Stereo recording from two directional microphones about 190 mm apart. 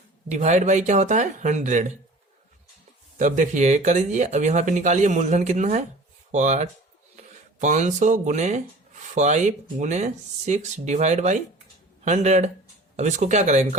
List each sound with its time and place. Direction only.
0.3 s speech: 40° right (ahead or behind)
3.2 s speech: 40° right (ahead or behind)